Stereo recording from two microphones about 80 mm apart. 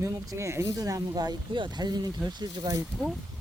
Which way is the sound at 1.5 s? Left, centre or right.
Right.